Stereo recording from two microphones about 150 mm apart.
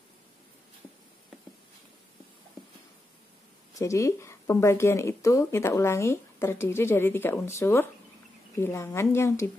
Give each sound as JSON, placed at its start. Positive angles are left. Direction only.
{"t": 3.7, "sound": "speech", "side_deg": 20}